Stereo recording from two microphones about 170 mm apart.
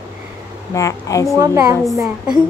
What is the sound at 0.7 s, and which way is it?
Speech, 20° left (ahead or behind).